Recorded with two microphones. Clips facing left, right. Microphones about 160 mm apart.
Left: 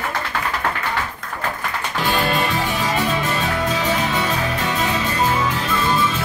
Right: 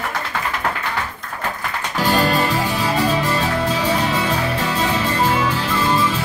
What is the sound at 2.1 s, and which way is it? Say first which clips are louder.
Music: right 3 dB; 40° right (ahead or behind).